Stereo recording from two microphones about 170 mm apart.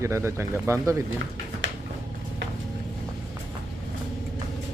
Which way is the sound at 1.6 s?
90° right.